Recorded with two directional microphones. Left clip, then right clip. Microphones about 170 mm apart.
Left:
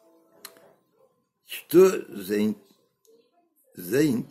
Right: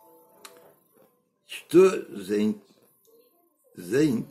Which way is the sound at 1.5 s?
25° left (ahead or behind).